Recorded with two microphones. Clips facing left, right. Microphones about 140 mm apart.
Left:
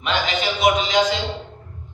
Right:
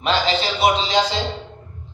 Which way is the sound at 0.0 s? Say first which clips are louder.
Right 3 dB; 30° right (ahead or behind).